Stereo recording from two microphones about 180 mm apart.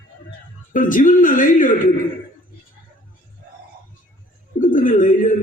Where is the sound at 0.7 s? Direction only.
45° left (ahead or behind).